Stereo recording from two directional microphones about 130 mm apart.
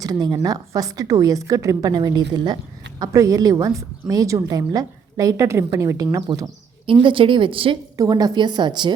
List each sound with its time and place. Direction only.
0.0 s a woman's voice: 30° right (ahead or behind)
6.8 s speech: 40° right (ahead or behind)
7.9 s speech: 30° right (ahead or behind)